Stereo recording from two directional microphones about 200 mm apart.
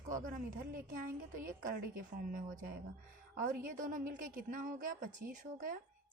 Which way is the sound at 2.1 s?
45° right (ahead or behind).